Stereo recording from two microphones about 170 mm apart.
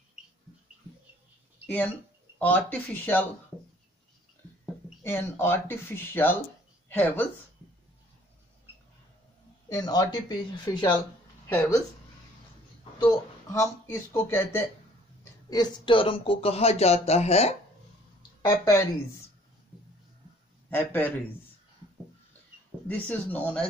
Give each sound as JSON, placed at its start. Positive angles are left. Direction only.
{"t": 2.3, "sound": "speech", "side_deg": 10}
{"t": 5.0, "sound": "speech", "side_deg": 15}
{"t": 9.7, "sound": "speech", "side_deg": 25}
{"t": 13.0, "sound": "speech", "side_deg": 20}
{"t": 15.5, "sound": "speech", "side_deg": 25}
{"t": 18.4, "sound": "speech", "side_deg": 15}
{"t": 20.7, "sound": "speech", "side_deg": 10}
{"t": 22.8, "sound": "speech", "side_deg": 10}